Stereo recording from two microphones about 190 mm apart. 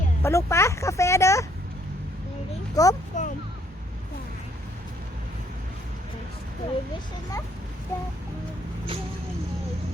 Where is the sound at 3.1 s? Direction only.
40° left (ahead or behind).